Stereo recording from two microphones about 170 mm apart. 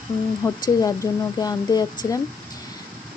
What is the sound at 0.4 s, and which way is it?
Speech, 20° left (ahead or behind).